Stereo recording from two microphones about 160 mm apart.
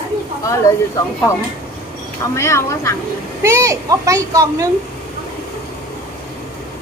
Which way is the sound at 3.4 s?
20° right (ahead or behind).